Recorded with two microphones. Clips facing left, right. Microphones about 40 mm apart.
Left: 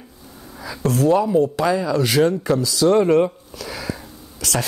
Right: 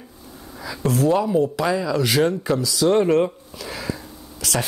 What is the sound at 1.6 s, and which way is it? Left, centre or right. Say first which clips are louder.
Speech: left 2 dB; left.